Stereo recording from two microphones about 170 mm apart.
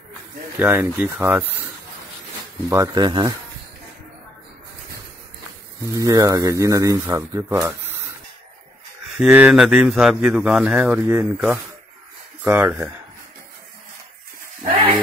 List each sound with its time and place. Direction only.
0.6 s speech: 10° right (ahead or behind)
2.7 s speech: 20° right (ahead or behind)
5.9 s speech: 20° right (ahead or behind)
9.2 s speech: 5° right (ahead or behind)